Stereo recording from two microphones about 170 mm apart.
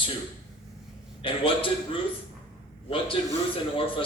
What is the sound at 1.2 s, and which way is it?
Speech, 30° left (ahead or behind).